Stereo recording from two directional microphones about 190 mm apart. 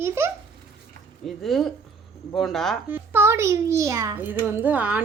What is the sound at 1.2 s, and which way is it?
Speech, centre (ahead or behind).